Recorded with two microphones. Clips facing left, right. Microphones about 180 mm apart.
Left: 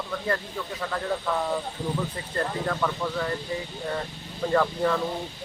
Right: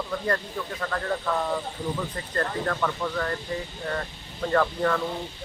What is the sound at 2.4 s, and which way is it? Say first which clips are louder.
Speech: even; 5° left (ahead or behind).